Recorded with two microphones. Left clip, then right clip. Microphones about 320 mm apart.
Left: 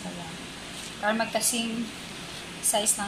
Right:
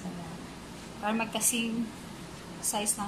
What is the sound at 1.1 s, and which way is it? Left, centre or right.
Speech, centre.